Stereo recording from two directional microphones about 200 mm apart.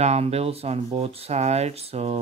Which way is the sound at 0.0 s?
30° right (ahead or behind).